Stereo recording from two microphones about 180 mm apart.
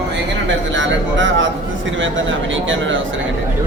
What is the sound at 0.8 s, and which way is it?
Speech, 90° right.